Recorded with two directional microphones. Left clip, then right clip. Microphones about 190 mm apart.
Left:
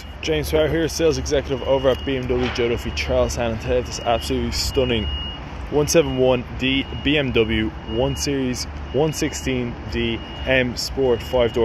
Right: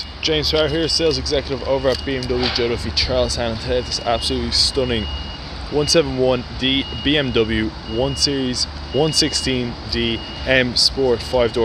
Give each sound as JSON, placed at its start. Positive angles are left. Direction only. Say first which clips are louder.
{"t": 0.3, "sound": "speech", "louder": "right 1 dB", "side_deg": 0}
{"t": 0.9, "sound": "speech", "louder": "right 1 dB", "side_deg": 10}
{"t": 4.7, "sound": "speech", "louder": "even", "side_deg": -5}
{"t": 6.6, "sound": "speech", "louder": "right 2 dB", "side_deg": -45}
{"t": 7.1, "sound": "speech", "louder": "right 1 dB", "side_deg": -10}
{"t": 8.1, "sound": "speech", "louder": "right 5 dB", "side_deg": 0}
{"t": 8.9, "sound": "speech", "louder": "right 3 dB", "side_deg": -10}